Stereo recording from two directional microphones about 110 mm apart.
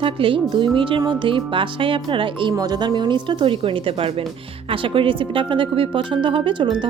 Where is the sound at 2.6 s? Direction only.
35° right (ahead or behind).